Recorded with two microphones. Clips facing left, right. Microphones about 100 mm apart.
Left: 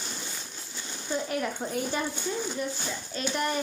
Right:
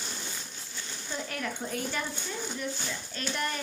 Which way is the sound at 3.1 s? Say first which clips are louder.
Left 5 dB; 20° left (ahead or behind).